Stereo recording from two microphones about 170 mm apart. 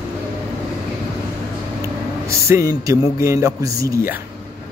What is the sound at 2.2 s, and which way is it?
A man's voice, 15° right (ahead or behind).